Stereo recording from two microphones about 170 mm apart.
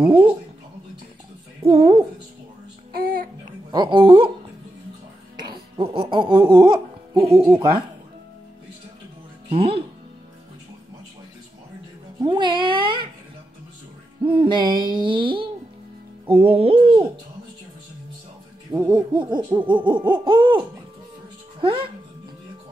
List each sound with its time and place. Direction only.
0.0 s speech: 30° right (ahead or behind)
1.6 s speech: 35° right (ahead or behind)
2.9 s music: 60° right (ahead or behind)
3.7 s speech: 30° right (ahead or behind)
5.4 s music: 30° right (ahead or behind)
5.9 s speech: 30° right (ahead or behind)
9.5 s speech: 35° right (ahead or behind)
12.2 s speech: 30° right (ahead or behind)
14.2 s speech: 30° right (ahead or behind)
18.7 s speech: 20° right (ahead or behind)